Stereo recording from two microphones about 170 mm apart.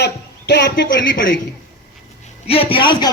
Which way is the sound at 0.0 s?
85° left.